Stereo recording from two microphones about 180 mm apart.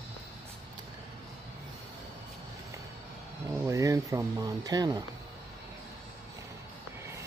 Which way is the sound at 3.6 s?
15° right (ahead or behind).